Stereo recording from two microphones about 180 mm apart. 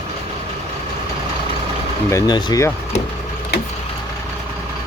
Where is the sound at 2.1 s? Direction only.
25° left (ahead or behind).